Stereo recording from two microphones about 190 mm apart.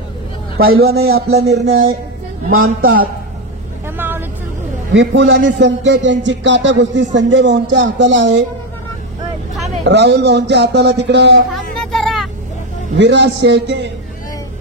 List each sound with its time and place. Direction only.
0.7 s speech: 55° right (ahead or behind)
2.5 s a man's voice: 90° right
4.9 s speech: 75° right (ahead or behind)
9.8 s speech: 65° right (ahead or behind)
11.5 s children playing: centre (ahead or behind)
12.9 s speech: 65° right (ahead or behind)